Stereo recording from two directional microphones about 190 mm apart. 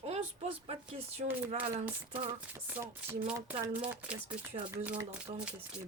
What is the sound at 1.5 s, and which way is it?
Speech, 10° right (ahead or behind).